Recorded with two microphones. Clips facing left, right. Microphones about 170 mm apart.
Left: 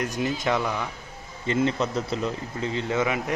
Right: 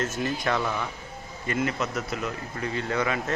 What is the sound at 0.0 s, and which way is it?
Speech, 15° left (ahead or behind).